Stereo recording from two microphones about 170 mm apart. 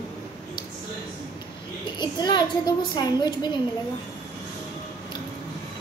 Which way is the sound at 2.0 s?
25° left (ahead or behind).